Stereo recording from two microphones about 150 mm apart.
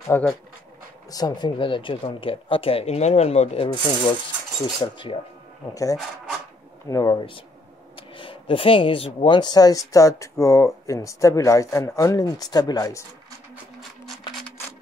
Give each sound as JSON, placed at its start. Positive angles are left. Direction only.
{"t": 0.1, "sound": "speech", "side_deg": 15}
{"t": 1.1, "sound": "speech", "side_deg": 30}
{"t": 6.9, "sound": "speech", "side_deg": 25}